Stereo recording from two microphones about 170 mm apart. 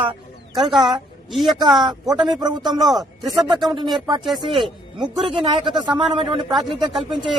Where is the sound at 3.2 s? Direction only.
Centre (ahead or behind).